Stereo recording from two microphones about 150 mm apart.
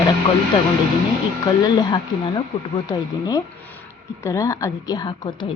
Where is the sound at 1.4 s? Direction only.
30° left (ahead or behind).